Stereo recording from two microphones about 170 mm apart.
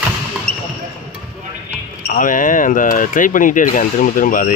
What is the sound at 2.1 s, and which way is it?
Speech, 50° left (ahead or behind).